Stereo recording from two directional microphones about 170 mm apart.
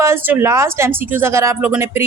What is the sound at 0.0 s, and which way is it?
Speech, 15° right (ahead or behind).